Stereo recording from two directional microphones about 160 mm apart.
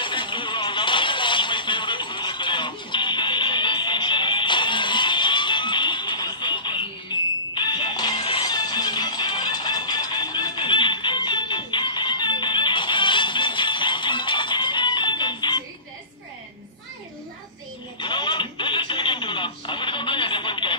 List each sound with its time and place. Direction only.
0.0 s a sound: 30° left (ahead or behind)
7.1 s fire alarm: 30° left (ahead or behind)
7.5 s music: 30° left (ahead or behind)
18.0 s radio: 30° left (ahead or behind)